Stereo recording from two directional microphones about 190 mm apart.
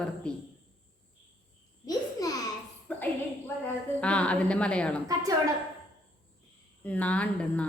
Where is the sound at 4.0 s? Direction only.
5° left (ahead or behind).